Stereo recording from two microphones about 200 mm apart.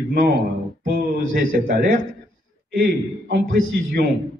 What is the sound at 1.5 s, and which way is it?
Speech, 45° right (ahead or behind).